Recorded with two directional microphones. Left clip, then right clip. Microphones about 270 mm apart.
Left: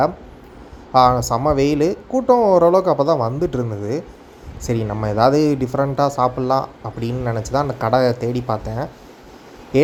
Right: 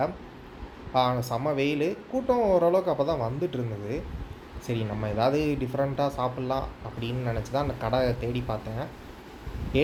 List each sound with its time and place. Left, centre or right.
0.9 s speech: left